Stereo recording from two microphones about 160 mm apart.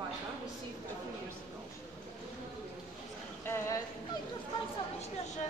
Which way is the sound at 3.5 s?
15° left (ahead or behind).